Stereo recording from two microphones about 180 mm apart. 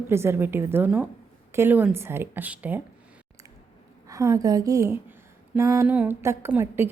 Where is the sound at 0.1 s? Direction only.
15° right (ahead or behind).